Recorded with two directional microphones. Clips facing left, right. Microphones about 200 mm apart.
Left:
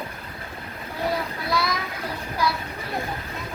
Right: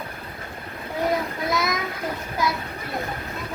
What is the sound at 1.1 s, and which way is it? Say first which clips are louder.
Child singing: right 2 dB; 20° right (ahead or behind).